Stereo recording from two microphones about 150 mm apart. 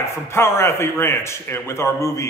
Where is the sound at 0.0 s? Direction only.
15° left (ahead or behind).